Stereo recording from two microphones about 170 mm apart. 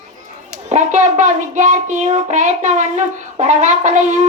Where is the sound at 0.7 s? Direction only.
45° right (ahead or behind).